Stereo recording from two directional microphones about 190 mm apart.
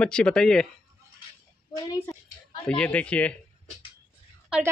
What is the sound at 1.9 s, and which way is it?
Speech, 15° left (ahead or behind).